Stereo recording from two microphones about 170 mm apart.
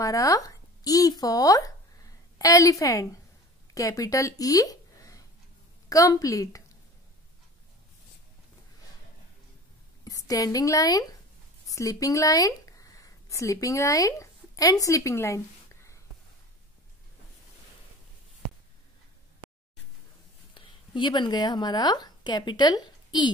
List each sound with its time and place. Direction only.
0.0 s a woman's voice: 20° left (ahead or behind)
10.0 s a woman's voice: 20° left (ahead or behind)
20.5 s a woman's voice: 25° left (ahead or behind)